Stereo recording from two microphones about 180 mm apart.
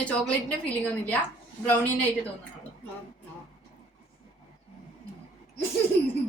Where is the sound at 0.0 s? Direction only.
10° left (ahead or behind).